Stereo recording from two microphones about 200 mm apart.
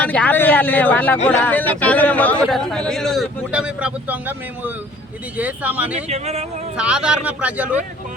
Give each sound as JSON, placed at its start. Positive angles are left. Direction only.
{"t": 0.0, "sound": "a man's voice", "side_deg": 5}
{"t": 6.1, "sound": "speech", "side_deg": -30}
{"t": 6.7, "sound": "a man's voice", "side_deg": -5}